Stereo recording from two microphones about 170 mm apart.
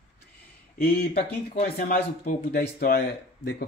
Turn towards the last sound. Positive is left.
turn(degrees=65)  # may be behind; listen again after turning